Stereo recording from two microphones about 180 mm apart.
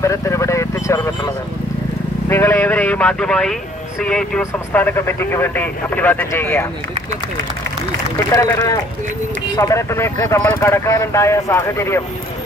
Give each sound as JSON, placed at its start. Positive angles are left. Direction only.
{"t": 0.0, "sound": "speech", "side_deg": 15}
{"t": 8.4, "sound": "a man's voice", "side_deg": 20}